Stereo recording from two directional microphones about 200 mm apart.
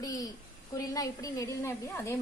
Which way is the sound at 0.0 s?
15° left (ahead or behind).